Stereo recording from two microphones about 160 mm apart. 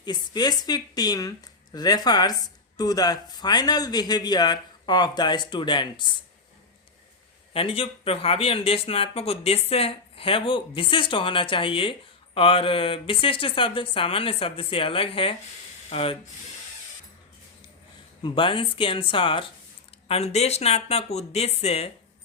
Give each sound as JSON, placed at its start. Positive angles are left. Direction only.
{"t": 0.0, "sound": "speech", "side_deg": 25}
{"t": 7.5, "sound": "speech", "side_deg": 35}
{"t": 18.2, "sound": "speech", "side_deg": 30}